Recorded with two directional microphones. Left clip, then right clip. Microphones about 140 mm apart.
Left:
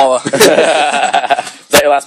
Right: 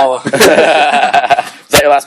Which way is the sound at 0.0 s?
40° left (ahead or behind).